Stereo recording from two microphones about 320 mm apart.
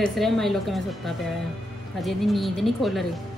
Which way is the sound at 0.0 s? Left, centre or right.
Centre.